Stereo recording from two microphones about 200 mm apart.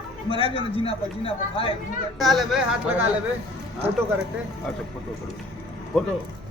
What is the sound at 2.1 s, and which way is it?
Speech, centre (ahead or behind).